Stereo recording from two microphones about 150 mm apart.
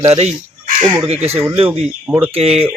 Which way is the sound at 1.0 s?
45° right (ahead or behind).